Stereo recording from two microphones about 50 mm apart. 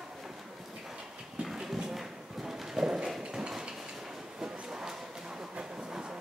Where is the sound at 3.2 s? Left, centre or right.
Centre.